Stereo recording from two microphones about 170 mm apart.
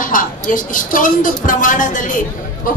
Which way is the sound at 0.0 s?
50° left (ahead or behind).